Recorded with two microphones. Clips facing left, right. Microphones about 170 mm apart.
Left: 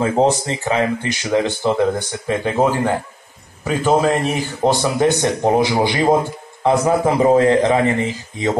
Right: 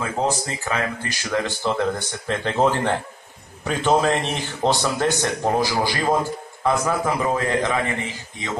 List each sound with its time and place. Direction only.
0.0 s a man's voice: 30° left (ahead or behind)